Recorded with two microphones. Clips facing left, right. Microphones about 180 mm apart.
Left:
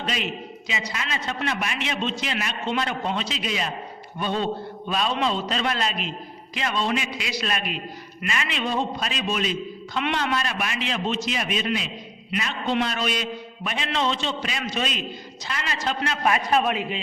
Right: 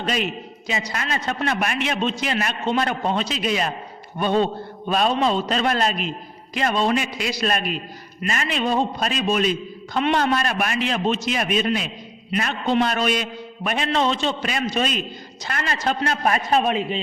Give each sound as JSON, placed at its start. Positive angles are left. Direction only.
{"t": 0.0, "sound": "a man's voice", "side_deg": -45}
{"t": 10.3, "sound": "a man's voice", "side_deg": -50}